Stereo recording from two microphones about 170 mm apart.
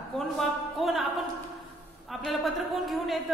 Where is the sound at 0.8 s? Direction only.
Centre (ahead or behind).